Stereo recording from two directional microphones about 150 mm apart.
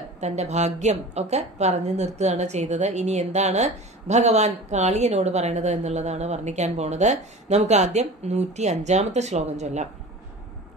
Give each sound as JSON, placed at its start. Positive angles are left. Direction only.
{"t": 0.2, "sound": "a woman's voice", "side_deg": -50}